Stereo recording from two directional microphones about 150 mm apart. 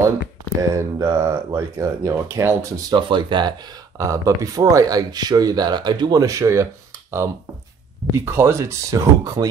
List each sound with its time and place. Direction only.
0.6 s speech: 20° right (ahead or behind)
3.0 s speech: 30° right (ahead or behind)
4.0 s speech: 20° right (ahead or behind)